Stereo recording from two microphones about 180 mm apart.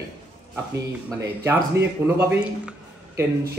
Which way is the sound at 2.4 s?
5° right (ahead or behind).